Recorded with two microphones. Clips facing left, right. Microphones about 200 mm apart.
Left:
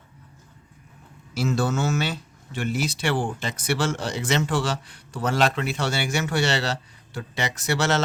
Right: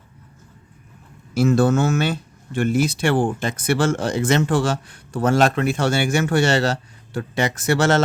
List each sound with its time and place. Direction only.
1.3 s speech: 50° right (ahead or behind)